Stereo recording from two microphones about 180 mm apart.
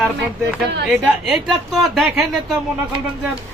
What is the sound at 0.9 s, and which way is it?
Speech, 5° right (ahead or behind).